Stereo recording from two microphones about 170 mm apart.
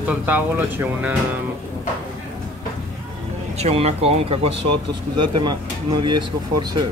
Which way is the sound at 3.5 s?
40° right (ahead or behind).